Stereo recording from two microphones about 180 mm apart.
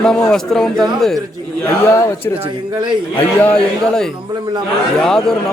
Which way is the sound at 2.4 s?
25° right (ahead or behind).